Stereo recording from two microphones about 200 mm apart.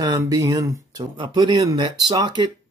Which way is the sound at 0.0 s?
20° right (ahead or behind).